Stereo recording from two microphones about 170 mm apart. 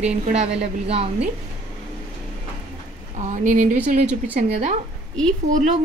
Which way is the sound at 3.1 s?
45° right (ahead or behind).